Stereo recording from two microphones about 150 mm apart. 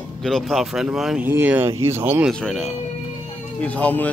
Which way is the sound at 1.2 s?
15° right (ahead or behind).